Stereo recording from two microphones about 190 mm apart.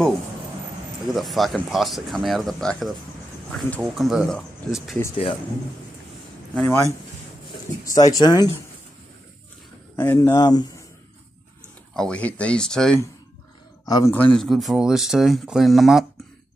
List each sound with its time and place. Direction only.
1.0 s speech: centre (ahead or behind)
6.5 s speech: 5° left (ahead or behind)
7.4 s speech: 20° left (ahead or behind)
9.9 s speech: 10° left (ahead or behind)
11.9 s speech: 5° left (ahead or behind)
13.8 s a man's voice: 20° left (ahead or behind)
14.1 s speech: 5° left (ahead or behind)